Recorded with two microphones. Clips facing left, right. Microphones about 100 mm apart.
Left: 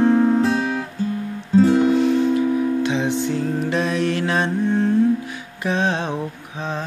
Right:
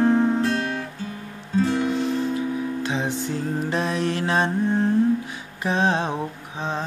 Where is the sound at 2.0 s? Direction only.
35° right (ahead or behind).